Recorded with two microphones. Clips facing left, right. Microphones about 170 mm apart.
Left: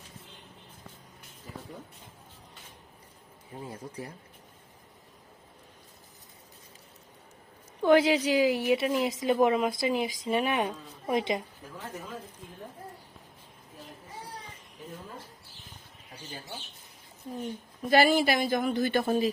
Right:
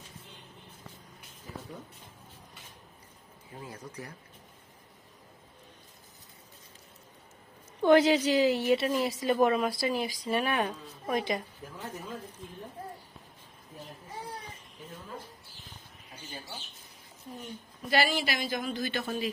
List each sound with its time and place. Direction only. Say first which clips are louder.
3.6 s speech: left 3 dB; 25° left (ahead or behind)
7.8 s a woman's voice: even; 5° left (ahead or behind)
17.9 s speech: left 6 dB; 50° left (ahead or behind)